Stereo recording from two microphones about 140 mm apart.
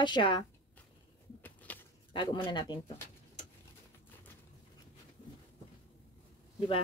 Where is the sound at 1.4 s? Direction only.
10° left (ahead or behind).